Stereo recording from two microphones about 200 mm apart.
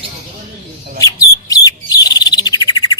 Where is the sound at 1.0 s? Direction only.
15° left (ahead or behind).